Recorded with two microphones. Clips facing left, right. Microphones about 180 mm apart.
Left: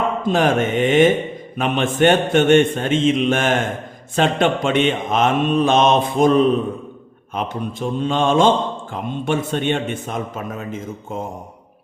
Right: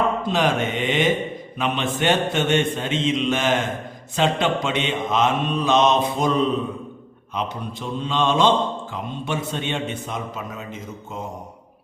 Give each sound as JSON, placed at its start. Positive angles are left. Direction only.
{"t": 0.3, "sound": "mantra", "side_deg": 50}